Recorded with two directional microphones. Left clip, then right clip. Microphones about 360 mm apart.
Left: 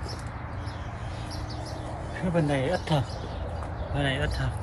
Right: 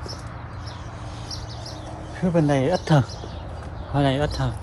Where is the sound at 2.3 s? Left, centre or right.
Right.